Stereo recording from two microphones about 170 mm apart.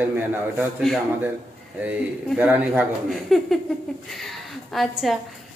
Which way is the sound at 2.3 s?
10° right (ahead or behind).